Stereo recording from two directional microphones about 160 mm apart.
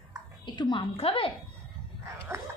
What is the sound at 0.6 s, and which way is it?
Speech, 30° left (ahead or behind).